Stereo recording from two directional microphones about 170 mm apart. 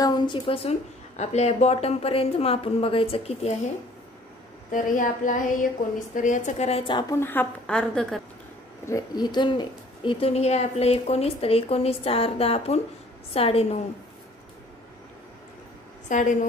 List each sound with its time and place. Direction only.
0.0 s a woman's voice: 25° left (ahead or behind)
4.6 s a woman's voice: 50° left (ahead or behind); by 7.2 s 25° left (ahead or behind)
7.2 s a woman's voice: 10° left (ahead or behind)
8.8 s a woman's voice: 20° left (ahead or behind)
16.1 s a woman's voice: 50° left (ahead or behind)